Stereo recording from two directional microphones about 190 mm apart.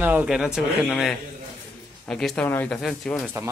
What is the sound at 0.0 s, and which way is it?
Speech, 10° right (ahead or behind).